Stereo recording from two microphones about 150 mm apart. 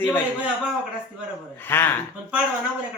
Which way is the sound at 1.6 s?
15° left (ahead or behind).